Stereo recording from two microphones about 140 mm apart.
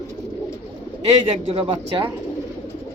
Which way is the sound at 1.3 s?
40° right (ahead or behind).